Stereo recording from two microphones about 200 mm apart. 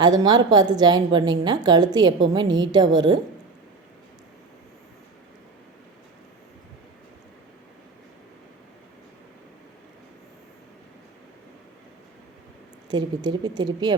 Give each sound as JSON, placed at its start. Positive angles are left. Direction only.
{"t": 0.0, "sound": "a woman's voice", "side_deg": -20}
{"t": 12.9, "sound": "a woman's voice", "side_deg": -20}